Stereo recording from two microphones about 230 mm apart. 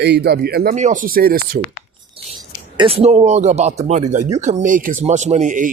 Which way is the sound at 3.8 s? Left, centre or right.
Right.